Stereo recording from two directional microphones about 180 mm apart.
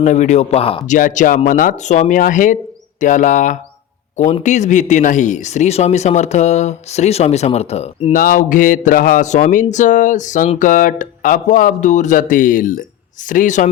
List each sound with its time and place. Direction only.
0.0 s speech: 40° left (ahead or behind)
0.9 s speech: 45° left (ahead or behind)
8.1 s speech: 50° left (ahead or behind)